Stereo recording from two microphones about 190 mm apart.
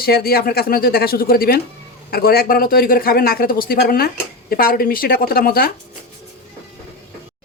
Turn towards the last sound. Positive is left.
turn(degrees=50)  # may be behind; listen again after turning